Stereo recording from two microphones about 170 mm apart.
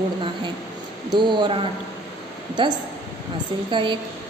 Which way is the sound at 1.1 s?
30° right (ahead or behind).